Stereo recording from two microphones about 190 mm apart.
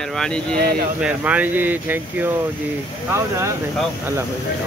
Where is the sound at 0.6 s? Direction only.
55° right (ahead or behind).